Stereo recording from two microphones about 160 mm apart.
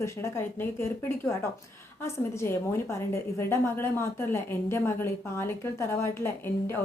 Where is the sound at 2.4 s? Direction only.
15° left (ahead or behind).